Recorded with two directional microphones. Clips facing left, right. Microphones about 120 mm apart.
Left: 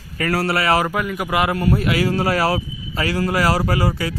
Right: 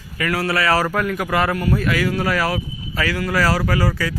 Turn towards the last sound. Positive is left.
turn(degrees=25)  # may be behind; listen again after turning